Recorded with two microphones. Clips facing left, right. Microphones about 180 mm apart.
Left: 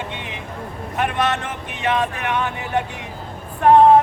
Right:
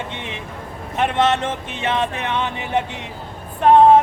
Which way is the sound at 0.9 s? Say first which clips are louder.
Right 3 dB; 25° right (ahead or behind).